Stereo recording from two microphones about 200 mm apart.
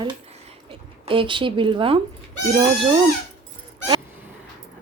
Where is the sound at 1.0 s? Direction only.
25° right (ahead or behind).